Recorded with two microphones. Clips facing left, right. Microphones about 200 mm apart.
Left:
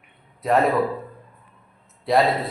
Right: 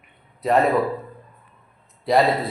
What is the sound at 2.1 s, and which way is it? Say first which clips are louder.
Speech: right 1 dB; centre (ahead or behind).